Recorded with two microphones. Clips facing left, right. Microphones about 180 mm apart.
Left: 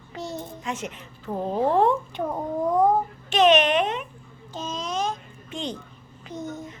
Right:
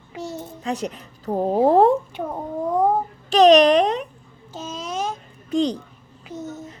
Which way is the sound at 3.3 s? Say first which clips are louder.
Right 6 dB; 35° right (ahead or behind).